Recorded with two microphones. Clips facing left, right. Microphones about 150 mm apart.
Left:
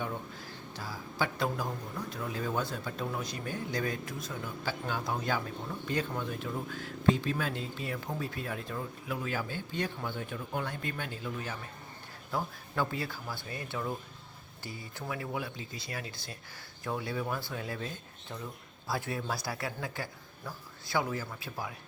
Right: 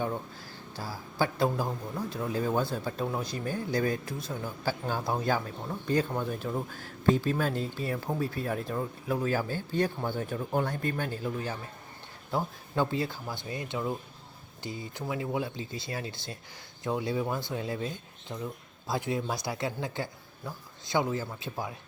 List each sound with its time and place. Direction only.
0.8 s speech: 30° right (ahead or behind)